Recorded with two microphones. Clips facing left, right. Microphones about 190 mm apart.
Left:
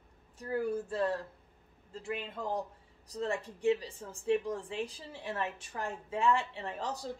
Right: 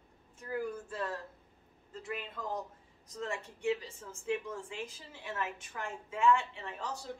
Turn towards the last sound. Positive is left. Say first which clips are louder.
# left 3 dB
turn(degrees=35)  # may be behind; listen again after turning